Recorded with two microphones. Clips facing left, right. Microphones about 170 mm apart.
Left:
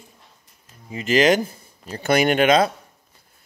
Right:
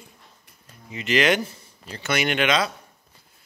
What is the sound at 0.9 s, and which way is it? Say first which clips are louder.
Speech: left 4 dB; 40° left (ahead or behind).